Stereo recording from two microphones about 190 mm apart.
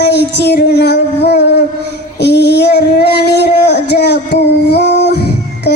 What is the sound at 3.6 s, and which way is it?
Child singing, 60° left (ahead or behind).